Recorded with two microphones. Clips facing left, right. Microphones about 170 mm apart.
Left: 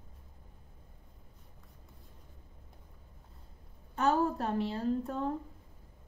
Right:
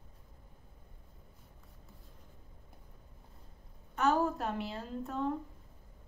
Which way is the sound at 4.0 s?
35° left (ahead or behind).